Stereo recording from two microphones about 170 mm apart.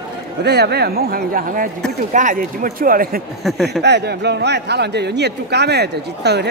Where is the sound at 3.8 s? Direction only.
85° right.